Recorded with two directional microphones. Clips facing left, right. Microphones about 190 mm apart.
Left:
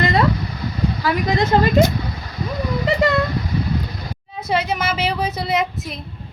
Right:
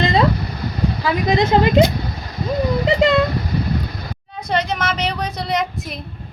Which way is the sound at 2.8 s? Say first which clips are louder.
Right 1 dB; 20° right (ahead or behind).